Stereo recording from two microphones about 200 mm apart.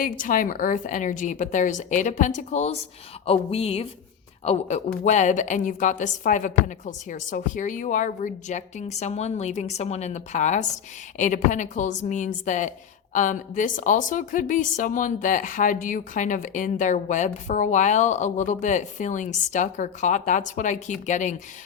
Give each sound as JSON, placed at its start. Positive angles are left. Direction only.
{"t": 0.0, "sound": "a woman's voice", "side_deg": 45}
{"t": 5.0, "sound": "a woman's voice", "side_deg": 35}